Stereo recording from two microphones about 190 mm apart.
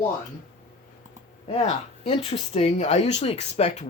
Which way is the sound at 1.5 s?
35° left (ahead or behind).